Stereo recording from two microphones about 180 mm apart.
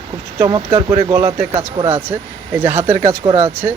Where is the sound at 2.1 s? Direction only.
10° right (ahead or behind).